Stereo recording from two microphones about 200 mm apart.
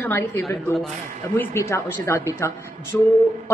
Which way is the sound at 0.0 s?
10° left (ahead or behind).